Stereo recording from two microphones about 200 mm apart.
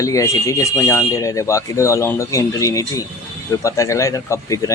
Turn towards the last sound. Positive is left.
turn(degrees=15)  # may be behind; listen again after turning